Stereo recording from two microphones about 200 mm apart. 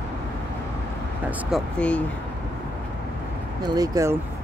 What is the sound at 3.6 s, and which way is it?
Speech, 15° right (ahead or behind).